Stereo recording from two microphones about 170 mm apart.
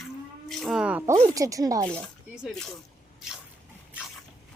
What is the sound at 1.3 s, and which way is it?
Speech, 20° right (ahead or behind).